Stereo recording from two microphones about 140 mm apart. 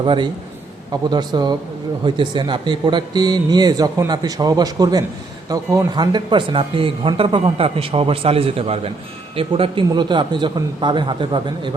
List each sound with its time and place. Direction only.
0.0 s a man's voice: 35° right (ahead or behind)